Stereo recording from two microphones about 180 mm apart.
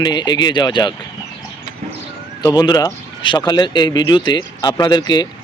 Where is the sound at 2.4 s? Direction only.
20° left (ahead or behind).